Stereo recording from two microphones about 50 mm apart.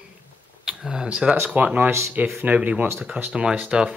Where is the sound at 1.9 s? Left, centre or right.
Right.